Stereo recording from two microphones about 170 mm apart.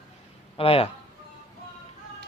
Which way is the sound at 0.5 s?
35° left (ahead or behind).